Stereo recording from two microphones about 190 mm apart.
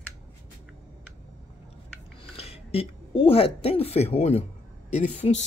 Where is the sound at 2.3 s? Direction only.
30° left (ahead or behind).